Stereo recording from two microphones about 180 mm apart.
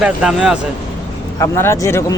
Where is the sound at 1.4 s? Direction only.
15° left (ahead or behind).